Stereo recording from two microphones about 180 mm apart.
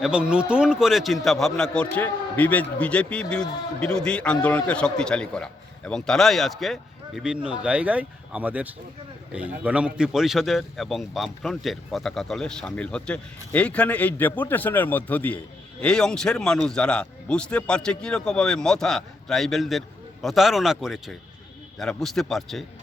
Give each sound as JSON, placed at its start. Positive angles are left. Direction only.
{"t": 0.0, "sound": "a man's voice", "side_deg": -5}